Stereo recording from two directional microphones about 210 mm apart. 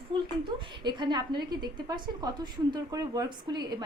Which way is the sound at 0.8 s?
20° right (ahead or behind).